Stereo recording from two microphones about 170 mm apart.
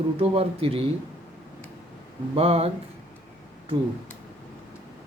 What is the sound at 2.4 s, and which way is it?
Speech, 35° right (ahead or behind).